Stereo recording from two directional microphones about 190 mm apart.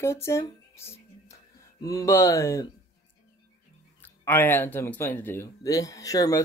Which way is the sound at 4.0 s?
10° left (ahead or behind).